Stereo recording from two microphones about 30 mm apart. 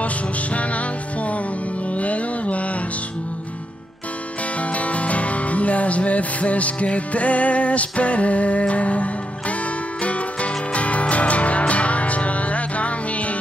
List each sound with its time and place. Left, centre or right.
0.6 s music: left
4.6 s music: left